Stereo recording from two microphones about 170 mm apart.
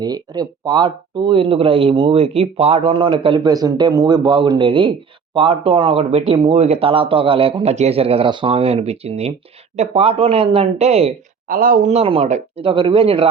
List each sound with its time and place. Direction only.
0.0 s speech: 25° right (ahead or behind); by 11.1 s 40° right (ahead or behind)
11.4 s speech: 55° right (ahead or behind); by 13.2 s 35° right (ahead or behind)